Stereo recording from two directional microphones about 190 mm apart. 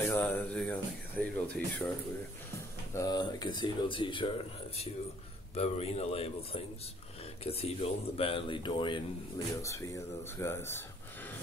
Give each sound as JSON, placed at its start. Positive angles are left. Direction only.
{"t": 0.0, "sound": "music", "side_deg": 10}
{"t": 1.2, "sound": "speech", "side_deg": 5}
{"t": 2.9, "sound": "speech", "side_deg": 20}
{"t": 5.5, "sound": "a man's voice", "side_deg": 30}
{"t": 9.6, "sound": "speech", "side_deg": 15}